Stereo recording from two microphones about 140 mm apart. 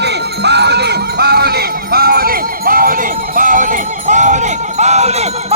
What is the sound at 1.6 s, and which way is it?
Run, 90° right.